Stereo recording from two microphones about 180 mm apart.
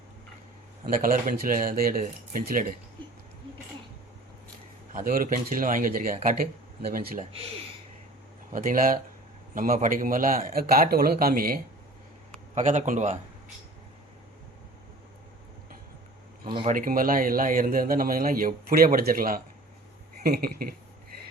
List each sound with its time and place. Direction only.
0.9 s a man's voice: 50° right (ahead or behind)
4.9 s a man's voice: 50° right (ahead or behind)
8.5 s a man's voice: 50° right (ahead or behind)
12.5 s a man's voice: 45° right (ahead or behind)
16.5 s speech: 30° right (ahead or behind)
16.7 s a man's voice: 50° right (ahead or behind)